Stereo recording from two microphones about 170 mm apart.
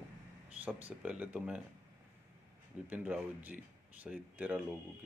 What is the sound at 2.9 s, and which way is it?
Speech, 10° right (ahead or behind).